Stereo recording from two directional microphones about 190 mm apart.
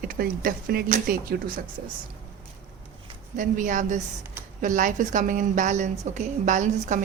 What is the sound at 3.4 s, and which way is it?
A woman's voice, 45° right (ahead or behind).